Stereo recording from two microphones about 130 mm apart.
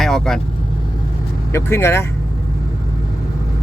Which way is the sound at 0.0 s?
5° left (ahead or behind).